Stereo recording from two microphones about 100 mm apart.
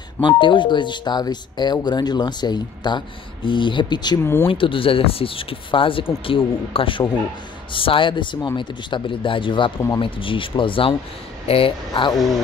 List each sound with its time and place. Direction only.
0.4 s speech: 55° left (ahead or behind)
4.2 s speech: 25° left (ahead or behind)
4.5 s speech: 60° left (ahead or behind)
11.4 s speech: 70° left (ahead or behind)
11.9 s speech: 60° left (ahead or behind)